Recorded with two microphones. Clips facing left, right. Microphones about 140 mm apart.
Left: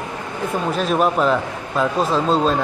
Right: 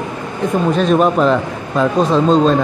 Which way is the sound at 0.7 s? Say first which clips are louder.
Right 4 dB; 5° left (ahead or behind).